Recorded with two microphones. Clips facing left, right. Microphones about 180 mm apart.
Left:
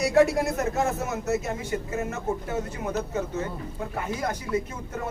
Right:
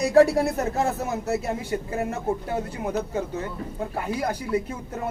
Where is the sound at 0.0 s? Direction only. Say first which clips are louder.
Right 3 dB; 35° right (ahead or behind).